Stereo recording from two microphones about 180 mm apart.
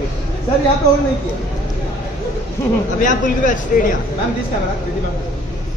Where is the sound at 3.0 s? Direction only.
45° left (ahead or behind).